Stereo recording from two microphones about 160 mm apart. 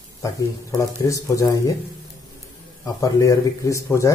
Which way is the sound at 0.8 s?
20° left (ahead or behind).